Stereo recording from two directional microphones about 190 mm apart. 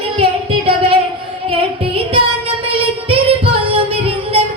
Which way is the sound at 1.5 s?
30° right (ahead or behind).